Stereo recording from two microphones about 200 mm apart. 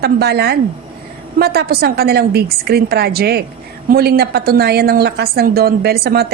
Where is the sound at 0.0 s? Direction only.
55° right (ahead or behind).